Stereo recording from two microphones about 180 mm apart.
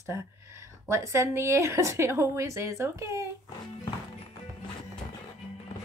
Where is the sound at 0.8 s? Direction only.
15° right (ahead or behind).